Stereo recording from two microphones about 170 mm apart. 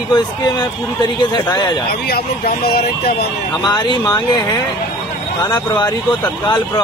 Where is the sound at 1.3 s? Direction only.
25° left (ahead or behind).